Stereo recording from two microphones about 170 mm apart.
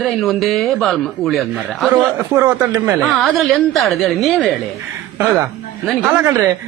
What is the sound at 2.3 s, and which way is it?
Speech, 15° right (ahead or behind).